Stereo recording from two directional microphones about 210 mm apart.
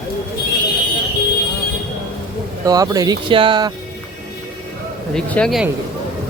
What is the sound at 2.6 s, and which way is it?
Speech, 15° right (ahead or behind).